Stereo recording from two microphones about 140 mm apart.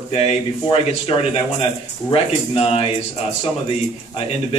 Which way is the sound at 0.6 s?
40° left (ahead or behind).